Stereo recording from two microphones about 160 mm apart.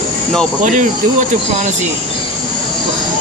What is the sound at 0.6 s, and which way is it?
Speech, 55° right (ahead or behind).